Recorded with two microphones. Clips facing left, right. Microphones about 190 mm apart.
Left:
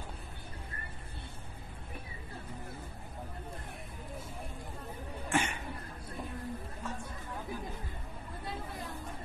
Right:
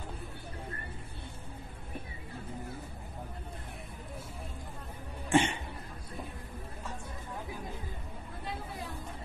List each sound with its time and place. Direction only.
5.3 s cough: 25° right (ahead or behind)